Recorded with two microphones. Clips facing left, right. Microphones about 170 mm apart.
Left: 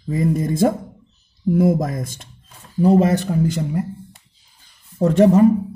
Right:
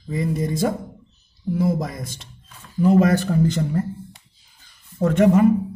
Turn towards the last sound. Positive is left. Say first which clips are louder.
# left 3 dB
turn(degrees=35)  # may be behind; listen again after turning